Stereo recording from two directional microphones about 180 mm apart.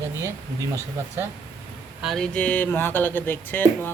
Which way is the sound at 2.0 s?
Centre (ahead or behind).